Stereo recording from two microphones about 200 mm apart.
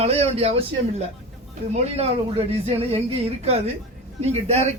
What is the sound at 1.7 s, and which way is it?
A man's voice, 35° right (ahead or behind).